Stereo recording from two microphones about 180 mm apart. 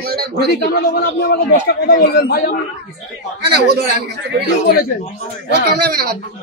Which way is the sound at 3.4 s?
65° right (ahead or behind).